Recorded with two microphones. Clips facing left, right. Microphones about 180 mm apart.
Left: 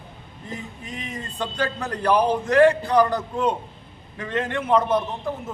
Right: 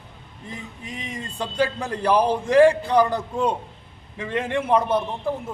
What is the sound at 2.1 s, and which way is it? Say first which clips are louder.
Speech: even; 30° right (ahead or behind).